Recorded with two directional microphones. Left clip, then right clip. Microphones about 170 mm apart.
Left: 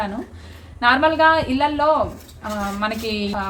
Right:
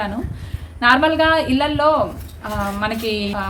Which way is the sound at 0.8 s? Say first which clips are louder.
Right 1 dB; 15° right (ahead or behind).